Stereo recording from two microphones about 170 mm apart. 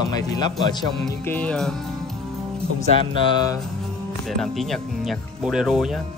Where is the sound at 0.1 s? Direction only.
25° left (ahead or behind).